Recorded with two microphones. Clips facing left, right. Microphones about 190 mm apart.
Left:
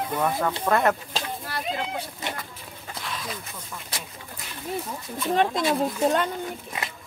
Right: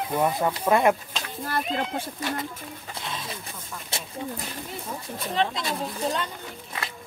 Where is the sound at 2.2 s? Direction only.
20° left (ahead or behind).